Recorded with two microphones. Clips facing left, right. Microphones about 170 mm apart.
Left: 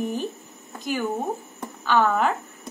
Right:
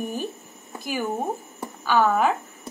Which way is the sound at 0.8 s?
10° right (ahead or behind).